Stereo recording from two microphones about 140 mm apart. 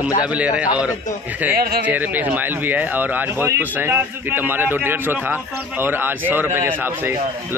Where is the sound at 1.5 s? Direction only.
90° right.